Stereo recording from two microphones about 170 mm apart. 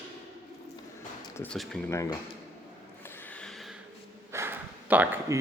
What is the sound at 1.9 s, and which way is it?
Speech, 20° left (ahead or behind).